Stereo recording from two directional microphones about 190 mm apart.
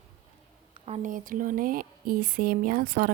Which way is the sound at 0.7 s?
35° right (ahead or behind).